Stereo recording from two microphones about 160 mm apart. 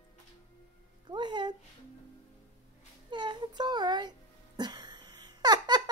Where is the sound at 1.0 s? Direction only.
30° right (ahead or behind).